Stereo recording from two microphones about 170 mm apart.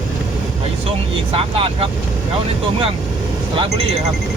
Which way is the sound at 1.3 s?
30° right (ahead or behind).